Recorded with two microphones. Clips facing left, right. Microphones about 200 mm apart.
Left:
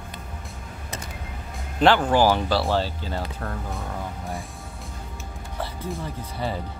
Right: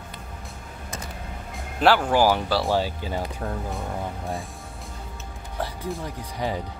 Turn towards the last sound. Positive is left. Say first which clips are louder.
# right 1 dB
turn(degrees=-15)  # may be behind; listen again after turning